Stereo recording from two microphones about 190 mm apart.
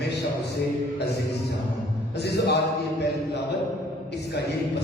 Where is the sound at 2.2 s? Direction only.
60° left (ahead or behind).